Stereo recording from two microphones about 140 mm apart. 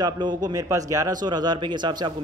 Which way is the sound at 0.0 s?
30° right (ahead or behind).